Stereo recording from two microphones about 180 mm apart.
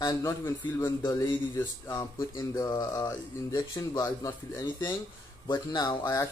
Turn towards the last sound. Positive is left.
turn(degrees=20)  # may be behind; listen again after turning